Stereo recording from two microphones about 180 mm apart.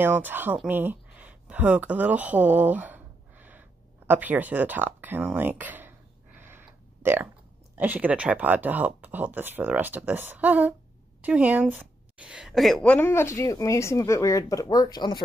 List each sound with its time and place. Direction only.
0.0 s speech: 10° right (ahead or behind)
0.6 s a sound: 10° right (ahead or behind)
7.7 s speech: 10° right (ahead or behind); by 15.2 s 25° left (ahead or behind)